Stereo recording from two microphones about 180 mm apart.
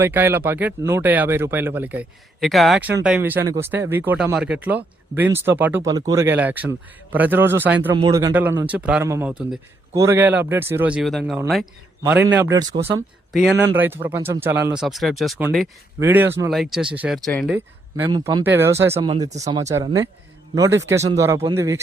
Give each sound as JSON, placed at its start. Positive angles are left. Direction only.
{"t": 0.0, "sound": "speech", "side_deg": -10}
{"t": 12.5, "sound": "speech", "side_deg": -25}
{"t": 13.3, "sound": "speech", "side_deg": 0}
{"t": 16.0, "sound": "speech", "side_deg": -10}
{"t": 16.5, "sound": "speech", "side_deg": 0}
{"t": 17.5, "sound": "speech", "side_deg": -10}
{"t": 18.9, "sound": "speech", "side_deg": -35}
{"t": 19.5, "sound": "speech", "side_deg": -20}
{"t": 21.1, "sound": "speech", "side_deg": -15}